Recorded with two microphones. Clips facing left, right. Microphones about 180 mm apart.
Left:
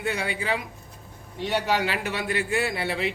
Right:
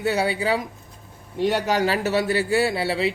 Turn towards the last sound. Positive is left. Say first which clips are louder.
# right 5 dB
turn(degrees=-30)  # may be behind; listen again after turning